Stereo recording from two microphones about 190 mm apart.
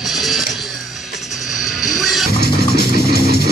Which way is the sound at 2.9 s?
55° left (ahead or behind).